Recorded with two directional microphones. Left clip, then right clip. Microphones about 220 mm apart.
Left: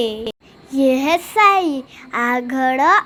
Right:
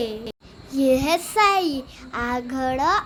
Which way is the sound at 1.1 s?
5° left (ahead or behind).